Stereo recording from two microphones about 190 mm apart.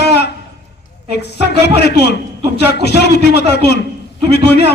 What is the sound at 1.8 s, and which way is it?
A man's voice, 60° left (ahead or behind).